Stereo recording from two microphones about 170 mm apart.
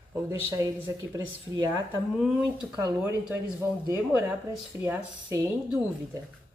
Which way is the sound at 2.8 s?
15° right (ahead or behind).